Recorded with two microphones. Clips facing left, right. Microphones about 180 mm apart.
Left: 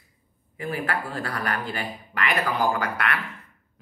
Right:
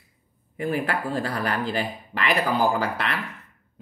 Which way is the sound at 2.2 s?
30° right (ahead or behind).